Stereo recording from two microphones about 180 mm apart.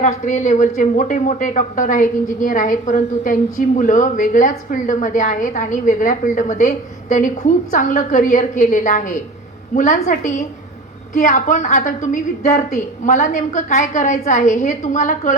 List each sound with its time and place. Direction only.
0.3 s a woman's voice: 40° left (ahead or behind)